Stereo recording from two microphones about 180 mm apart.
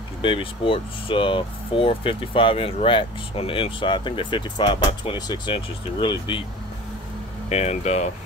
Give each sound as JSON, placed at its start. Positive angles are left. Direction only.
{"t": 0.2, "sound": "speech", "side_deg": 30}
{"t": 7.4, "sound": "speech", "side_deg": 35}